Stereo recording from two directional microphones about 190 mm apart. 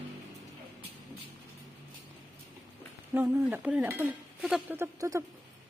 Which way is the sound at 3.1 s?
15° right (ahead or behind).